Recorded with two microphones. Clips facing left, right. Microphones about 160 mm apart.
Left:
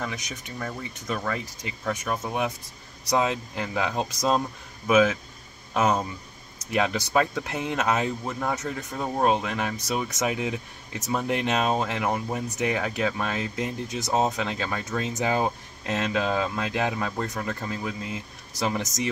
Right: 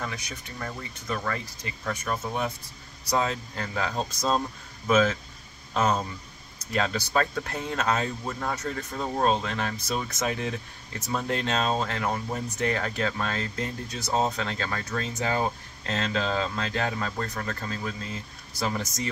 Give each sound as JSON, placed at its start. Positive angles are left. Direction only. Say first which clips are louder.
{"t": 0.0, "sound": "a man's voice", "louder": "left 2 dB", "side_deg": 20}